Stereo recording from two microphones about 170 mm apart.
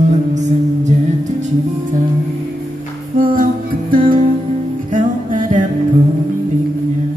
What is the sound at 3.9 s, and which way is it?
Music, 55° right (ahead or behind).